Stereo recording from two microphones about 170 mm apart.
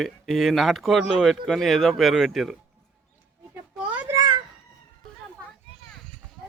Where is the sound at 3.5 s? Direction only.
10° right (ahead or behind).